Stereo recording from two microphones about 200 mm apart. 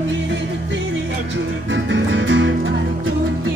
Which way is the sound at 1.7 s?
65° right (ahead or behind).